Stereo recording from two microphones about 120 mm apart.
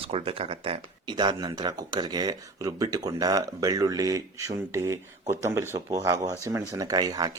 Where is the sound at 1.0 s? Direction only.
35° right (ahead or behind).